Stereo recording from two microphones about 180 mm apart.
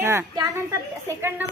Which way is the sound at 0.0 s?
15° right (ahead or behind).